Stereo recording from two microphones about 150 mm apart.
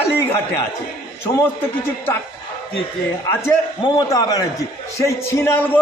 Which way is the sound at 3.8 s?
25° left (ahead or behind).